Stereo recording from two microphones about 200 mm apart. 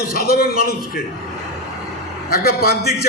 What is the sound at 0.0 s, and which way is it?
A man's voice, 50° left (ahead or behind).